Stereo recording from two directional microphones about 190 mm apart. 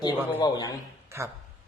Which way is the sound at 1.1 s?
15° right (ahead or behind).